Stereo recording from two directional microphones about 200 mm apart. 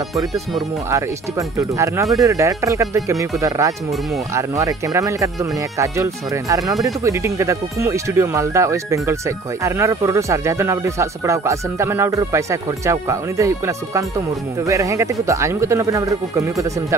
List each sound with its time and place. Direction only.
1.6 s speech: 15° right (ahead or behind)